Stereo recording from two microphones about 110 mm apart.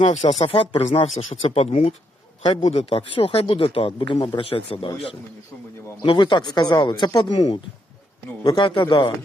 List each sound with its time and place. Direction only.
0.1 s speech: 90° left
0.4 s speech: 55° left (ahead or behind)
0.8 s speech: 90° left; by 4.9 s 55° left (ahead or behind)
6.0 s speech: 45° left (ahead or behind)